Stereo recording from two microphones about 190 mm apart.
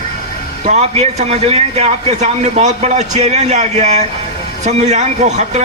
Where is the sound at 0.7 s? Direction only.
35° right (ahead or behind).